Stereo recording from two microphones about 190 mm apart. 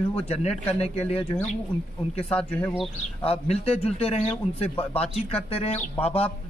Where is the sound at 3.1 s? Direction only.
30° left (ahead or behind).